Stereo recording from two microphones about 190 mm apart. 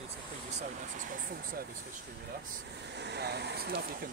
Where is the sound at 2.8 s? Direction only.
60° right (ahead or behind).